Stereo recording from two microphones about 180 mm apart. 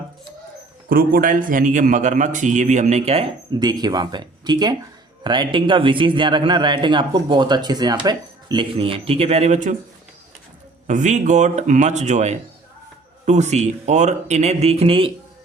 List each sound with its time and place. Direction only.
0.9 s a man's voice: 55° right (ahead or behind); by 3.2 s 35° right (ahead or behind)
3.6 s a man's voice: 25° right (ahead or behind); by 9.7 s 40° right (ahead or behind)
10.8 s speech: 45° right (ahead or behind)